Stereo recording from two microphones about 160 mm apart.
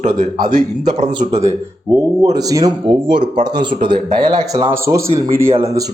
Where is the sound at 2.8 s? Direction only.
30° right (ahead or behind); by 5.5 s 15° right (ahead or behind).